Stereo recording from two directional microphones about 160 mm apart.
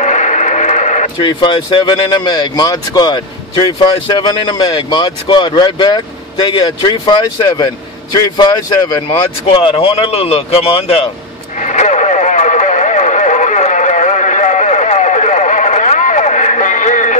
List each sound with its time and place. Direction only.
0.0 s radio: 50° left (ahead or behind)
1.2 s speech: 30° left (ahead or behind)
11.6 s radio: 45° left (ahead or behind)